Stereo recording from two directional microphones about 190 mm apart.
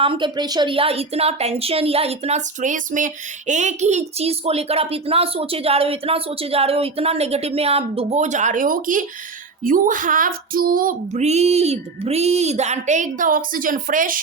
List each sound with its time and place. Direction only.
0.0 s a woman's voice: 25° right (ahead or behind); by 14.2 s 45° right (ahead or behind)